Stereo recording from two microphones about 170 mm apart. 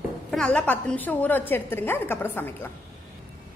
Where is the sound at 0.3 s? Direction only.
5° left (ahead or behind).